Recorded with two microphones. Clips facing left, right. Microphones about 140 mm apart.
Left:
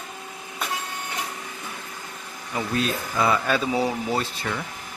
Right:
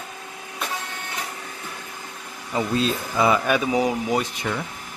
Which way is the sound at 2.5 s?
25° right (ahead or behind).